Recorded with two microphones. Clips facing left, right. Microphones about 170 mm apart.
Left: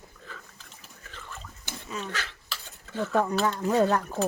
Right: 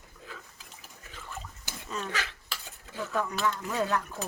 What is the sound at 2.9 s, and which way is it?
Speech, 10° right (ahead or behind).